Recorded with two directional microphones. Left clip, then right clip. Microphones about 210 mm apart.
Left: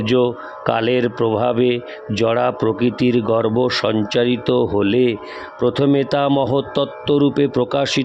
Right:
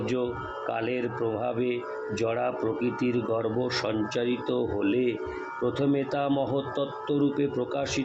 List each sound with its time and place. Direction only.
0.0 s speech: 50° left (ahead or behind)